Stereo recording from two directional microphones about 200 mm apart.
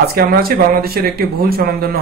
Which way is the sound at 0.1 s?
50° right (ahead or behind).